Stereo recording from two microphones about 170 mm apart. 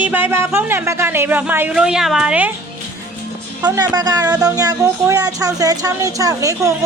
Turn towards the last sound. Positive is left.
turn(degrees=-20)  # may be behind; listen again after turning